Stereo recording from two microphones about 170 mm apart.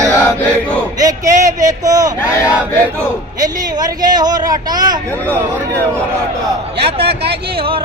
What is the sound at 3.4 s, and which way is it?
Speech, 20° right (ahead or behind).